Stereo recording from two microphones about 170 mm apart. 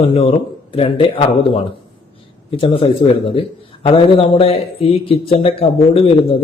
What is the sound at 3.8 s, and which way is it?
A man's voice, 30° left (ahead or behind).